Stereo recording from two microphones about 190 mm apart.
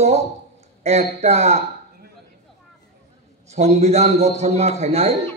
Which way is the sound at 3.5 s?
35° right (ahead or behind).